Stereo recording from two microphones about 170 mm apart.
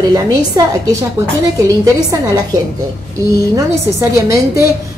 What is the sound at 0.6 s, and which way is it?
Speech, 20° right (ahead or behind).